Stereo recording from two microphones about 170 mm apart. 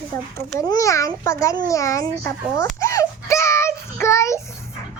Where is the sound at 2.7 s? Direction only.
20° left (ahead or behind).